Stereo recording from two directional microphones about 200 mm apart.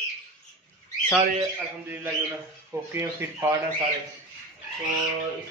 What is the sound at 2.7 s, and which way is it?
Speech, 10° right (ahead or behind).